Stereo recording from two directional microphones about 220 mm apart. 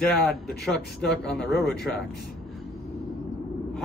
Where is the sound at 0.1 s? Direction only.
Centre (ahead or behind).